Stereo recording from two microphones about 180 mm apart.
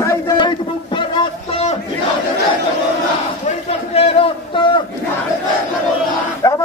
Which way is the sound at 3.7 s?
35° left (ahead or behind).